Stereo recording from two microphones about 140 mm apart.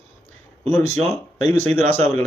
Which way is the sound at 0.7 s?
15° left (ahead or behind).